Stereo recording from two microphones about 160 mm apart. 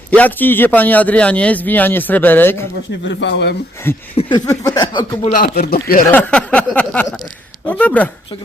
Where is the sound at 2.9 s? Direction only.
90° left.